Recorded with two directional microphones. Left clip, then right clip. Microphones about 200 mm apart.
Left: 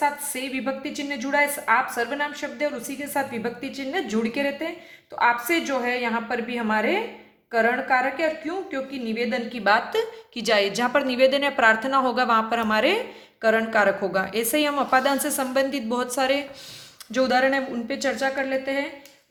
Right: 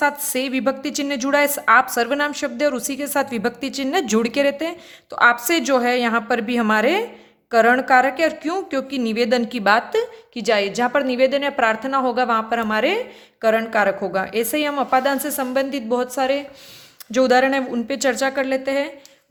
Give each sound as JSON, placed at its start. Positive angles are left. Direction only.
{"t": 0.0, "sound": "a woman's voice", "side_deg": -55}